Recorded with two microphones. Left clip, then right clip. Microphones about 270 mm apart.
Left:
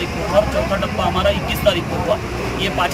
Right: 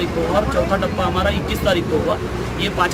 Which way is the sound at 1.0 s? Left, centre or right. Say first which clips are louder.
Left 2 dB; centre.